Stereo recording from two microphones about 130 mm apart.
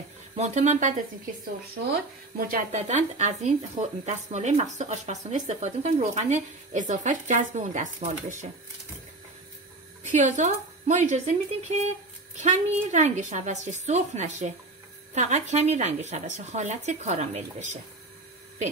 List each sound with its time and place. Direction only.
0.4 s speech: 65° right (ahead or behind)
2.3 s speech: 80° right
10.1 s speech: 70° right (ahead or behind)